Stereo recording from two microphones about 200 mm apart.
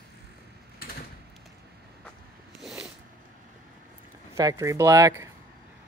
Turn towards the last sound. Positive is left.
turn(degrees=-15)  # may be behind; listen again after turning